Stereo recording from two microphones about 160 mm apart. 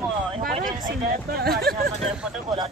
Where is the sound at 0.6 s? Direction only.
60° right (ahead or behind); by 1.9 s 75° right (ahead or behind).